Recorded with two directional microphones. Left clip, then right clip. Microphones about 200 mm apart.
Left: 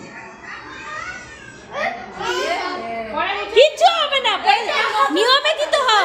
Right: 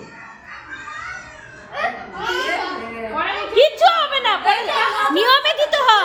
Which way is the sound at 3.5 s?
15° left (ahead or behind).